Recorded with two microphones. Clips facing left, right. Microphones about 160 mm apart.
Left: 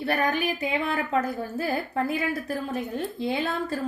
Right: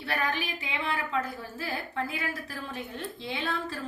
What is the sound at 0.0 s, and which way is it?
A woman's voice, 40° left (ahead or behind).